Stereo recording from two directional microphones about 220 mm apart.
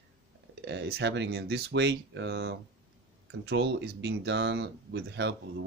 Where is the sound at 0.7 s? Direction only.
50° right (ahead or behind).